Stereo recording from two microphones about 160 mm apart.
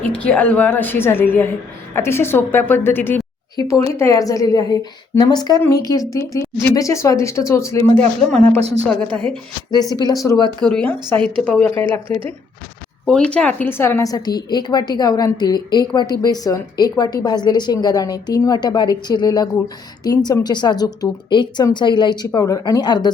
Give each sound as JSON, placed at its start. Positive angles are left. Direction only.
{"t": 0.2, "sound": "a woman's voice", "side_deg": 10}
{"t": 8.6, "sound": "a woman's voice", "side_deg": -40}
{"t": 9.9, "sound": "a woman's voice", "side_deg": 25}
{"t": 10.6, "sound": "a woman's voice", "side_deg": 5}